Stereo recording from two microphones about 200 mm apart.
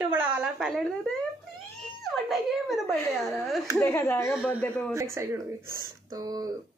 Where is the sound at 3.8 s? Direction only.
10° left (ahead or behind).